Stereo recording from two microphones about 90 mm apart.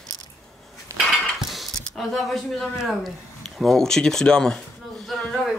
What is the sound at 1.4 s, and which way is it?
Speech, centre (ahead or behind).